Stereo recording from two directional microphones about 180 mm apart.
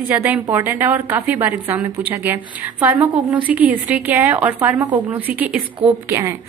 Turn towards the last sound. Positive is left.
turn(degrees=-15)  # may be behind; listen again after turning